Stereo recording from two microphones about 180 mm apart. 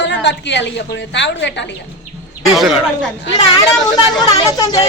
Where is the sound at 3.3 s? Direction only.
25° left (ahead or behind).